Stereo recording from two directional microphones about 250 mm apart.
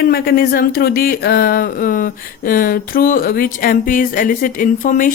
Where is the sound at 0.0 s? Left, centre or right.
Left.